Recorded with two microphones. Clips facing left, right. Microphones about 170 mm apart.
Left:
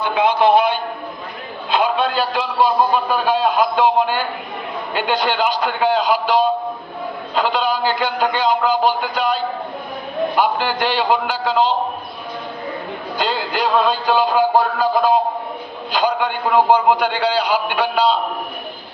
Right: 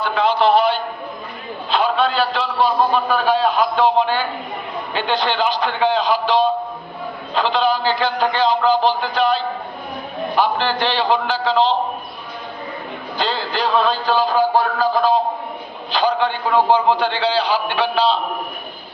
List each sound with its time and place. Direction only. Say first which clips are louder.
0.0 s a sound: left 1 dB; 15° left (ahead or behind)
1.7 s a man's voice: even; 15° left (ahead or behind)
7.4 s a man's voice: right 2 dB; 10° left (ahead or behind)
10.3 s a man's voice: right 2 dB; 10° left (ahead or behind)
13.1 s a man's voice: left 1 dB; 10° left (ahead or behind)